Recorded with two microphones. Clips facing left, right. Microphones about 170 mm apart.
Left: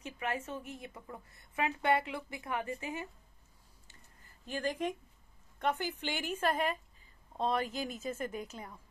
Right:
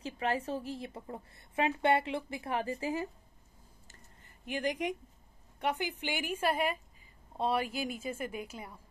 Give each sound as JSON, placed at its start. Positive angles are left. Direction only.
{"t": 0.0, "sound": "a woman's voice", "side_deg": -30}
{"t": 4.5, "sound": "a woman's voice", "side_deg": -15}